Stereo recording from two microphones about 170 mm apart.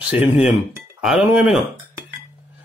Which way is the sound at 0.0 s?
5° right (ahead or behind).